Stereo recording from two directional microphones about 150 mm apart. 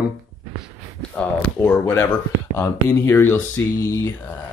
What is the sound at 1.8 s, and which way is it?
Speech, 15° left (ahead or behind).